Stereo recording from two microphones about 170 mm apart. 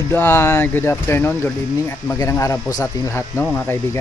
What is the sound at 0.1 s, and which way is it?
Speech, 10° left (ahead or behind).